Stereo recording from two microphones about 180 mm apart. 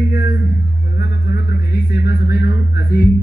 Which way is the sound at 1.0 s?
60° left (ahead or behind).